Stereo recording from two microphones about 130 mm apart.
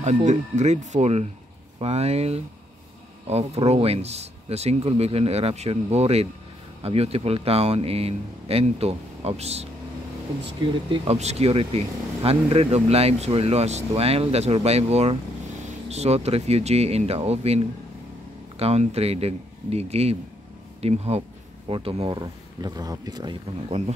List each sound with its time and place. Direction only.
0.0 s speech: 65° right (ahead or behind)
10.9 s speech: 55° right (ahead or behind)
22.2 s speech: 30° right (ahead or behind)